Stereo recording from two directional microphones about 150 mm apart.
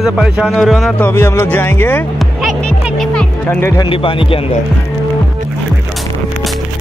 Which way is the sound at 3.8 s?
35° left (ahead or behind).